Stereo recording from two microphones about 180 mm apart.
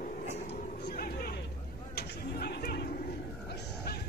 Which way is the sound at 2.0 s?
60° left (ahead or behind).